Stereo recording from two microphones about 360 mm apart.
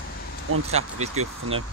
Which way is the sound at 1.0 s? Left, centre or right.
Centre.